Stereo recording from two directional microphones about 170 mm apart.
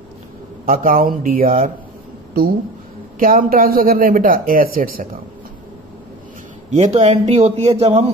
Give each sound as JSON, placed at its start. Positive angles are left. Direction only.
{"t": 0.7, "sound": "speech", "side_deg": -55}
{"t": 3.2, "sound": "speech", "side_deg": -55}
{"t": 6.7, "sound": "speech", "side_deg": -40}